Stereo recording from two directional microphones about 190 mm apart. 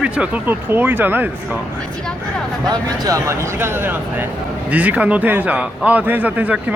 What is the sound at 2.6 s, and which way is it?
A man's voice, 20° right (ahead or behind).